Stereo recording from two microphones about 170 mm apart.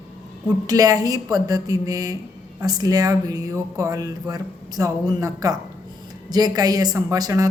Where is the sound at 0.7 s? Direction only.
20° right (ahead or behind).